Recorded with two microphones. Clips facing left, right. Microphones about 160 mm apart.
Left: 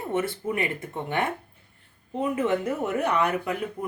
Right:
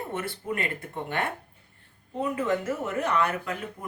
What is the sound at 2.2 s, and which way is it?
A woman's voice, 20° left (ahead or behind).